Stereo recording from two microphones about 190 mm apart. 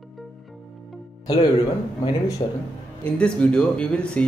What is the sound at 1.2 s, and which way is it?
Speech, 20° left (ahead or behind).